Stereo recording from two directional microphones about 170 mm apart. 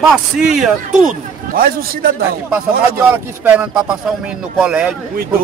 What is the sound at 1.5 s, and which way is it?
Speech, 60° right (ahead or behind).